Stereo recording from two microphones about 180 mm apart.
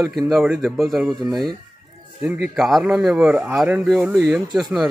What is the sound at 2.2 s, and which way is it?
Speech, 10° right (ahead or behind).